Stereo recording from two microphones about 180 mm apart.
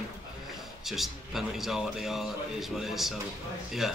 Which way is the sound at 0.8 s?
Centre (ahead or behind).